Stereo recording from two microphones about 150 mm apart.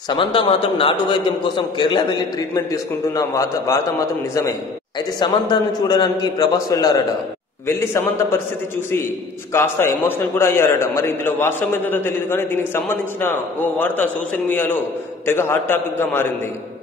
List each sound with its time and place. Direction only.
0.1 s a man's voice: 35° left (ahead or behind)
5.2 s a man's voice: 30° left (ahead or behind)
9.5 s a man's voice: 15° left (ahead or behind)